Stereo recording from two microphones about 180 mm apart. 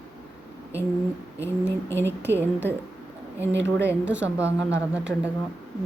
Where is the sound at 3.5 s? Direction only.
90° right.